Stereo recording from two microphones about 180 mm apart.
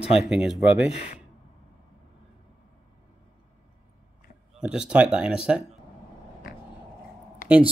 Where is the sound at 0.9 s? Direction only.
40° left (ahead or behind).